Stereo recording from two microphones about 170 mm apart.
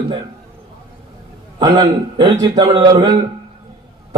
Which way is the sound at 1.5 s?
30° right (ahead or behind).